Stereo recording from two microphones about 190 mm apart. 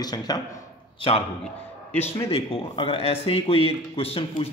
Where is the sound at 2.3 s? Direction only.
30° left (ahead or behind).